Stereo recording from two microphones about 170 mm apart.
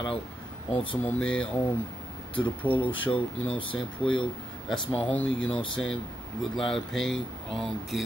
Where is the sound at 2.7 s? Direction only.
30° left (ahead or behind).